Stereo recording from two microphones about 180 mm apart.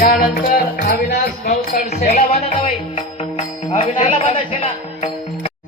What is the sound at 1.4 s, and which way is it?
Music, 40° left (ahead or behind).